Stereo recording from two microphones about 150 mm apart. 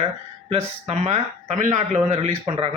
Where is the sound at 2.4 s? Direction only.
40° right (ahead or behind).